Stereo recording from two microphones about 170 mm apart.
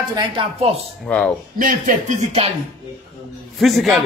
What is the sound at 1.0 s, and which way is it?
Speech, 5° left (ahead or behind).